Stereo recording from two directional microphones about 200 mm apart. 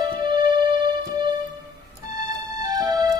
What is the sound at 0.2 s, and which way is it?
Music, 20° right (ahead or behind).